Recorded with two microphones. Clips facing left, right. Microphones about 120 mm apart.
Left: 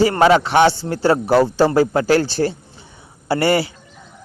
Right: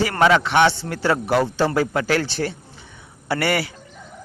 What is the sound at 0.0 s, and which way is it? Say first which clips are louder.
A man's voice: left 4 dB; 30° left (ahead or behind).